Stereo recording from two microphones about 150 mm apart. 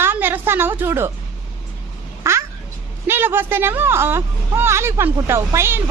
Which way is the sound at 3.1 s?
15° right (ahead or behind).